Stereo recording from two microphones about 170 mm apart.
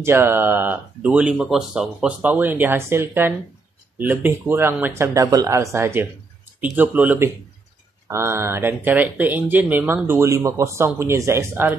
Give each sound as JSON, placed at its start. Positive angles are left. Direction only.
{"t": 0.0, "sound": "speech", "side_deg": -15}